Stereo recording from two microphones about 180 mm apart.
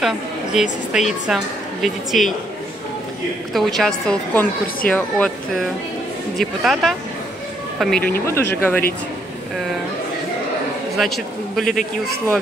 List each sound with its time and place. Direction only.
0.0 s a woman's voice: centre (ahead or behind)
3.5 s speech: centre (ahead or behind)
11.6 s a man's voice: 45° left (ahead or behind)